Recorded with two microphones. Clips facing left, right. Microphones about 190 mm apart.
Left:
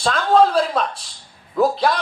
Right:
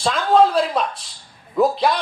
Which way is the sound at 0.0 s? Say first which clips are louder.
Even; centre (ahead or behind).